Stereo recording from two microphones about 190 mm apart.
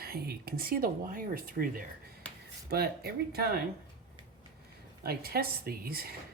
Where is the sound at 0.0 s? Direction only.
55° right (ahead or behind).